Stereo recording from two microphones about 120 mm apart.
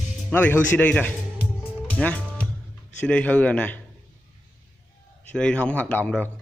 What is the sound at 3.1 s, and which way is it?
Speech, 10° left (ahead or behind).